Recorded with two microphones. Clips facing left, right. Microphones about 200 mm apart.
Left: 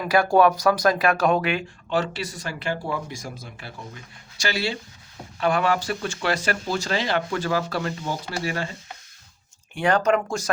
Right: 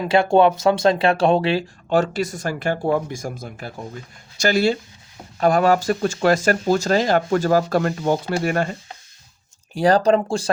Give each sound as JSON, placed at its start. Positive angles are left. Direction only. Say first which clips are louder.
{"t": 0.0, "sound": "speech", "louder": "right 3 dB", "side_deg": -25}
{"t": 1.9, "sound": "speech", "louder": "right 6 dB", "side_deg": -45}
{"t": 9.7, "sound": "speech", "louder": "right 5 dB", "side_deg": -35}